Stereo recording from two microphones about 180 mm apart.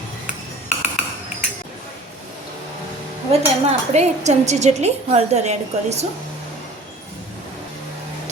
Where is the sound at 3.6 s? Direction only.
40° right (ahead or behind).